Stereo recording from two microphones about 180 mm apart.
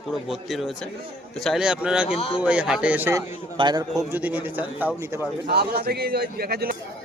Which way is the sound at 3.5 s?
25° right (ahead or behind).